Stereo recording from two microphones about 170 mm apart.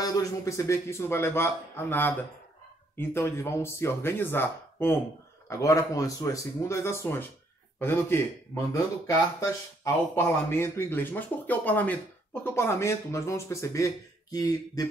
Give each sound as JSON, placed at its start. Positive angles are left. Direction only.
{"t": 0.0, "sound": "speech", "side_deg": 20}